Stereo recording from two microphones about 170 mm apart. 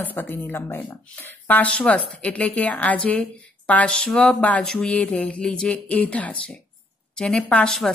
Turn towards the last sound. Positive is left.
turn(degrees=5)  # may be behind; listen again after turning